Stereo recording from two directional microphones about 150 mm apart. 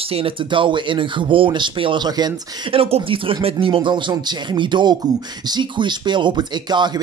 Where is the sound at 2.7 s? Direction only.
40° right (ahead or behind).